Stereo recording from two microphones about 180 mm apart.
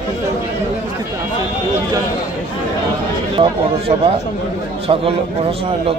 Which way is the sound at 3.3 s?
30° right (ahead or behind).